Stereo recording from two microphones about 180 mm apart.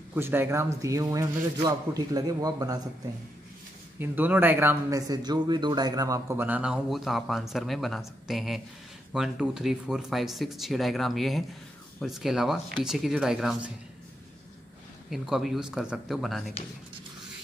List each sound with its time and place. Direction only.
0.1 s a man's voice: 10° right (ahead or behind)
4.0 s speech: 10° right (ahead or behind)
15.0 s speech: centre (ahead or behind)